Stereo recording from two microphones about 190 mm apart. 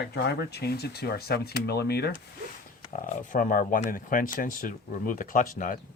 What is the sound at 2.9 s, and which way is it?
Speech, 45° left (ahead or behind).